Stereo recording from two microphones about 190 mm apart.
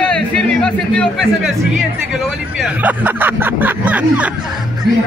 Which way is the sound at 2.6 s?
10° right (ahead or behind).